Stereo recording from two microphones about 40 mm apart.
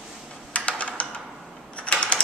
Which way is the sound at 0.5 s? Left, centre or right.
Left.